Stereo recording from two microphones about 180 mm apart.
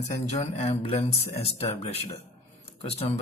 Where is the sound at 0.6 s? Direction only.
35° left (ahead or behind).